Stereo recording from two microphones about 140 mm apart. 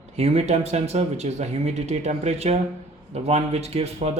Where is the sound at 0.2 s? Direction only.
50° right (ahead or behind).